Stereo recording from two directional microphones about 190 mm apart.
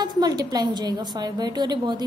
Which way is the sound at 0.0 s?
20° right (ahead or behind).